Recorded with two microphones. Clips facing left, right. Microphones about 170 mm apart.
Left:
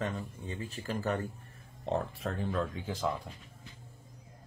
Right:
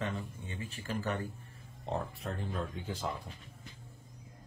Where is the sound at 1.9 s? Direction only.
90° left.